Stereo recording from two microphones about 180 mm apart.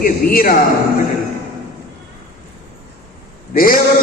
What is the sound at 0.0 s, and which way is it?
Speech, 50° left (ahead or behind).